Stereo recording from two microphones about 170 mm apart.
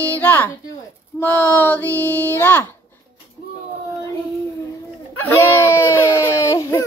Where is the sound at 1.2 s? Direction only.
10° left (ahead or behind).